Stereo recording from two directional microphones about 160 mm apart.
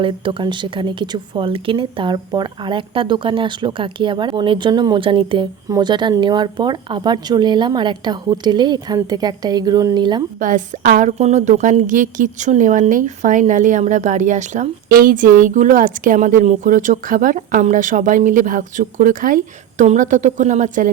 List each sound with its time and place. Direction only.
0.0 s speech: 30° right (ahead or behind)
10.4 s a woman's voice: 55° right (ahead or behind)